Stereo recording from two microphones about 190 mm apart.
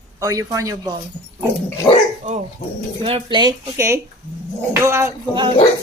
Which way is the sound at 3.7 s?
15° right (ahead or behind).